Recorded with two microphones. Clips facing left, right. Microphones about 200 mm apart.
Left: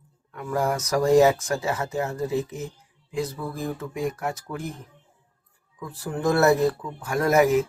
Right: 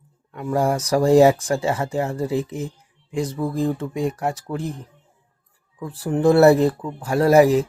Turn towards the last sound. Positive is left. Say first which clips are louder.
# right 5 dB
turn(degrees=-30)  # may be behind; listen again after turning